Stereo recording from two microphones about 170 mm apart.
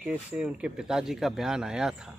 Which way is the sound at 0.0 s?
5° right (ahead or behind).